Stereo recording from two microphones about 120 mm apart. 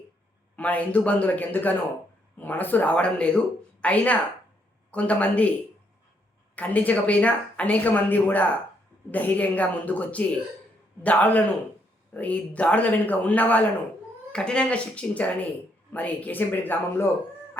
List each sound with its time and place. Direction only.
0.5 s speech: 10° left (ahead or behind)
6.6 s speech: 15° left (ahead or behind)